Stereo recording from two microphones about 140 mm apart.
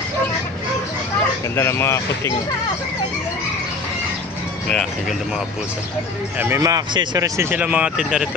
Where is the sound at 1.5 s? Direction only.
15° left (ahead or behind).